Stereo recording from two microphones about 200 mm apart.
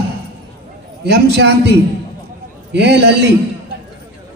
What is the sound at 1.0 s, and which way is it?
A woman's voice, 55° right (ahead or behind).